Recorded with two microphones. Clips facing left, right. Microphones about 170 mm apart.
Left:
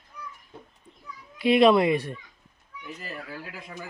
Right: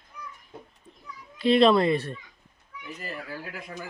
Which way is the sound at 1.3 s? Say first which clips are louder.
Left 1 dB; 15° left (ahead or behind).